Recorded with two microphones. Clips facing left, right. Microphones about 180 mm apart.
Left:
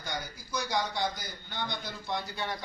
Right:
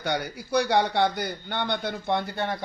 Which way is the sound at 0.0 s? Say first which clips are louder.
Right 10 dB; 65° right (ahead or behind).